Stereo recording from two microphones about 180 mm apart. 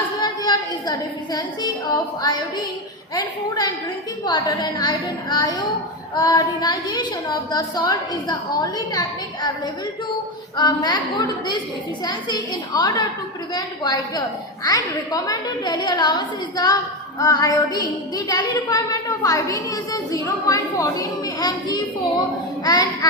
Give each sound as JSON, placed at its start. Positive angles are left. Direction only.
{"t": 0.2, "sound": "child singing", "side_deg": 20}
{"t": 3.2, "sound": "a woman's voice", "side_deg": 25}
{"t": 10.6, "sound": "a woman's voice", "side_deg": 20}